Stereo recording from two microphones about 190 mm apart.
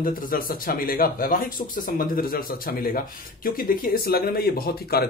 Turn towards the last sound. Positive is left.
turn(degrees=55)  # may be behind; listen again after turning